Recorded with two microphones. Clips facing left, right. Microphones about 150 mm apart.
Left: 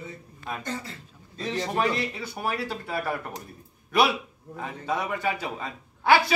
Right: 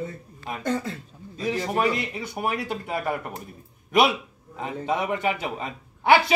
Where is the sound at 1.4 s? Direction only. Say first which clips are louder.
Right 2 dB; 10° right (ahead or behind).